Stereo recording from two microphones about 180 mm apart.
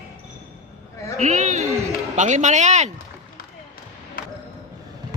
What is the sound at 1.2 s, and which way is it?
Speech, 40° right (ahead or behind).